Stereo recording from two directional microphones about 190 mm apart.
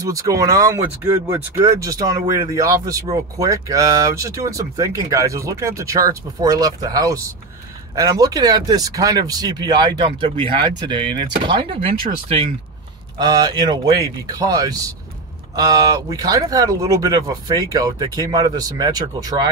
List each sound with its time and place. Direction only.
0.0 s speech: 20° right (ahead or behind)